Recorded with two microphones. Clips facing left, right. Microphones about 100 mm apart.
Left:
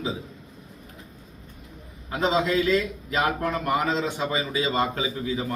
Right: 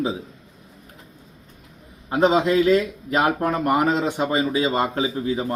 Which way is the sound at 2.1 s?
50° right (ahead or behind).